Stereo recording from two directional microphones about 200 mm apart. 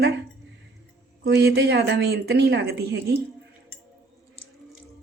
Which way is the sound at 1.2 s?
55° right (ahead or behind).